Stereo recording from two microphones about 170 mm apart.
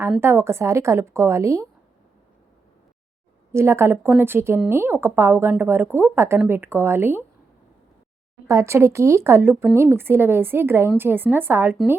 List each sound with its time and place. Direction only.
0.2 s speech: 15° right (ahead or behind)
3.5 s speech: 15° right (ahead or behind)
8.4 s speech: 15° right (ahead or behind)